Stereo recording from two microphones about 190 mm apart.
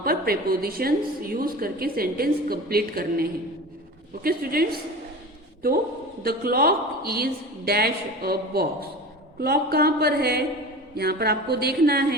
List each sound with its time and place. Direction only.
0.0 s a woman's voice: 50° right (ahead or behind)
6.2 s a woman's voice: 50° right (ahead or behind)